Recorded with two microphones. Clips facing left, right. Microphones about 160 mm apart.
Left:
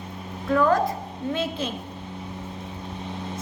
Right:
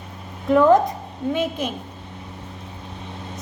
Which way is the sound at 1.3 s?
15° right (ahead or behind).